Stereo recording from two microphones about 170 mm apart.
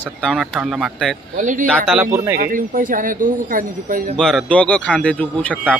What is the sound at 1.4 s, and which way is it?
Speech, 50° right (ahead or behind).